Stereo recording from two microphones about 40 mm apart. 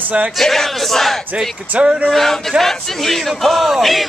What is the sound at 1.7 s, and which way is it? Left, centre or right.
Speech, right.